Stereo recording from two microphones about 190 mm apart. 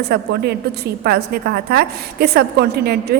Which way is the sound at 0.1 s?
60° right (ahead or behind).